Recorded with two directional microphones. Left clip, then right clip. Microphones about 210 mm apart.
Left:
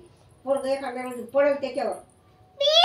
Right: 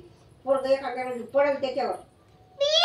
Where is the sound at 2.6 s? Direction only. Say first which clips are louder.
Left 3 dB; 55° left (ahead or behind).